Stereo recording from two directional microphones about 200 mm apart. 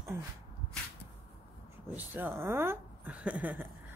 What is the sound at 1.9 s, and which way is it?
A woman's voice, 10° right (ahead or behind).